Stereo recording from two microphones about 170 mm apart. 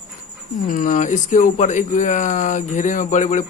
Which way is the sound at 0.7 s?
50° left (ahead or behind).